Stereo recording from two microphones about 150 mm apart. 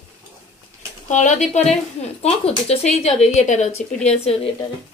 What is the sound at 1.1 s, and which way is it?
A woman's voice, 55° left (ahead or behind).